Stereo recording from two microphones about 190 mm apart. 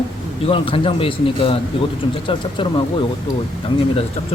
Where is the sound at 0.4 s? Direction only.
30° left (ahead or behind).